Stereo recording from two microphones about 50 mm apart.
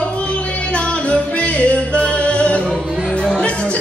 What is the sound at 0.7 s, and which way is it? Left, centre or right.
Music, left.